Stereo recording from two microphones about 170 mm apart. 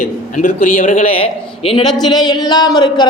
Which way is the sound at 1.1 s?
35° left (ahead or behind).